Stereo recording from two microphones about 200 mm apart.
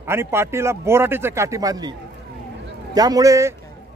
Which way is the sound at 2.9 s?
20° right (ahead or behind).